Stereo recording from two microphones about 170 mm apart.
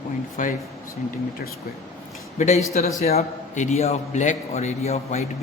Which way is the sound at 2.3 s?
40° left (ahead or behind).